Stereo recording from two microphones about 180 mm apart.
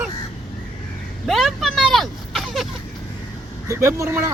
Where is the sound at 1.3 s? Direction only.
Centre (ahead or behind).